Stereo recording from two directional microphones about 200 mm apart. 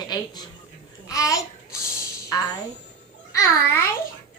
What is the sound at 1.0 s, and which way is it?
Babbling, 15° left (ahead or behind).